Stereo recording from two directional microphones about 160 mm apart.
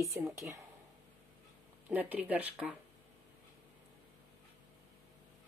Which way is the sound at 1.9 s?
10° right (ahead or behind).